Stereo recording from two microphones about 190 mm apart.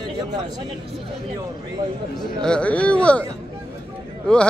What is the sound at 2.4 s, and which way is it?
Speech, 5° left (ahead or behind).